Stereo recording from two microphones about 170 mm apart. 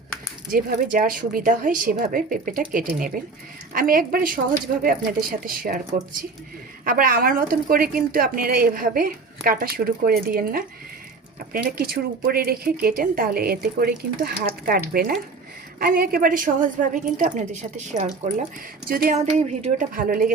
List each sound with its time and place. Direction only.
0.5 s a woman's voice: 55° right (ahead or behind)
6.8 s a woman's voice: 55° right (ahead or behind)
15.8 s a woman's voice: 60° right (ahead or behind); by 18.4 s 40° right (ahead or behind)
18.9 s a woman's voice: 55° right (ahead or behind)